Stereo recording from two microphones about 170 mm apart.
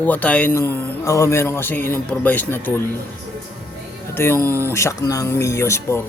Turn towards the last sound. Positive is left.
turn(degrees=15)  # may be behind; listen again after turning